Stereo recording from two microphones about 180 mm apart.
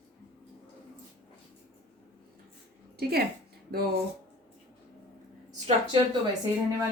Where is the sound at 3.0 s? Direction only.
60° right (ahead or behind).